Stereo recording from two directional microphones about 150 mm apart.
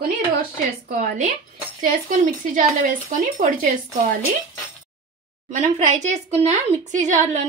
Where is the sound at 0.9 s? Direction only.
65° right (ahead or behind).